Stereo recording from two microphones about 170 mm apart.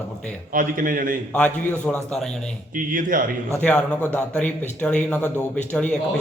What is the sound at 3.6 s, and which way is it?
A man's voice, 10° left (ahead or behind).